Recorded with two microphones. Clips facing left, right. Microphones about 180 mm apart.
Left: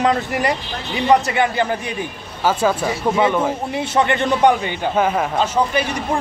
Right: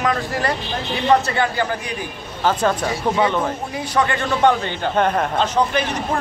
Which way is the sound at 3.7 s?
25° left (ahead or behind).